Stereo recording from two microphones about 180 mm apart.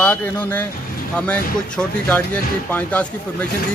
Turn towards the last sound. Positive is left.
turn(degrees=5)  # may be behind; listen again after turning